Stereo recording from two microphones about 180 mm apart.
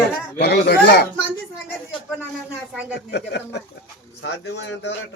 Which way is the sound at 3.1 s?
70° left (ahead or behind).